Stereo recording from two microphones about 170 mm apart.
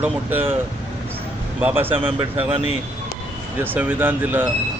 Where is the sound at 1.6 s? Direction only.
10° right (ahead or behind).